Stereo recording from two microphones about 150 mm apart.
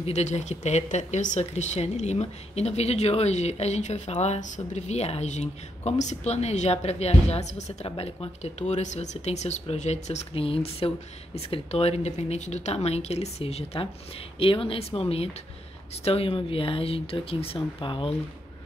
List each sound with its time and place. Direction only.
0.0 s speech: 50° left (ahead or behind)